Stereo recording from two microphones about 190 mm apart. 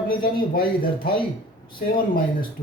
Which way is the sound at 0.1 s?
50° left (ahead or behind).